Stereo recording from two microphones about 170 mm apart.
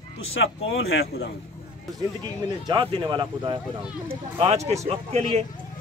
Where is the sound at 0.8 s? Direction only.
75° left (ahead or behind).